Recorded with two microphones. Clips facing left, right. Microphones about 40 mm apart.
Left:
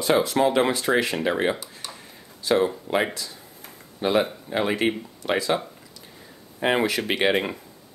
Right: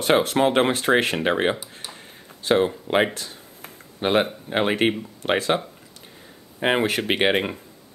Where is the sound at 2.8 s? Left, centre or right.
Right.